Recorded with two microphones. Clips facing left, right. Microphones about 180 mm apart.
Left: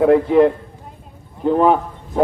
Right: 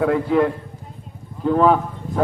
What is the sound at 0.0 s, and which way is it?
A man's voice, 25° left (ahead or behind).